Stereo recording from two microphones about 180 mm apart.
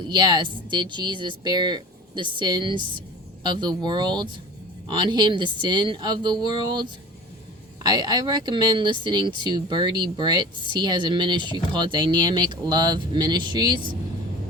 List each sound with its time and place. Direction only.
0.0 s speech: 25° right (ahead or behind)
7.9 s speech: 25° right (ahead or behind)